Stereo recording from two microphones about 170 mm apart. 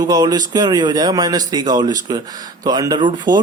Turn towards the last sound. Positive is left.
turn(degrees=-25)  # may be behind; listen again after turning